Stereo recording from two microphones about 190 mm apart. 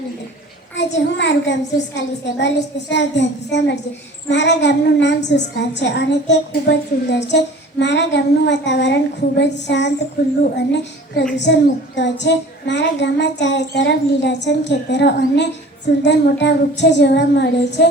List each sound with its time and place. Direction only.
0.8 s a woman's voice: 70° left (ahead or behind)
10.6 s child singing: 60° left (ahead or behind)
11.3 s a woman's voice: 65° left (ahead or behind)
16.0 s child singing: 65° left (ahead or behind)